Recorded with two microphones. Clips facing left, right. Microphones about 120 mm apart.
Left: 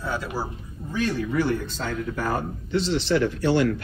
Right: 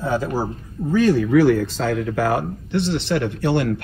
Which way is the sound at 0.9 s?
65° right (ahead or behind).